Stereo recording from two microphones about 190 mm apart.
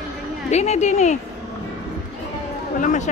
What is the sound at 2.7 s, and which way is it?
Speech, 40° left (ahead or behind).